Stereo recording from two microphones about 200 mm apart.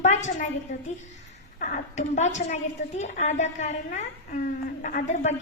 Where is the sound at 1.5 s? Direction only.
40° left (ahead or behind).